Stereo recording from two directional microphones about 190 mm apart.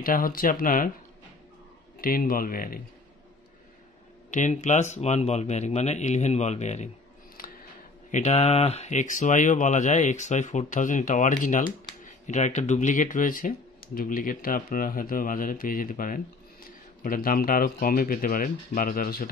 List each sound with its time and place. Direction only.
0.0 s speech: 50° left (ahead or behind)
2.0 s speech: 50° left (ahead or behind)
4.3 s speech: 40° left (ahead or behind)
7.4 s a sound: 50° left (ahead or behind)
8.1 s speech: 35° left (ahead or behind)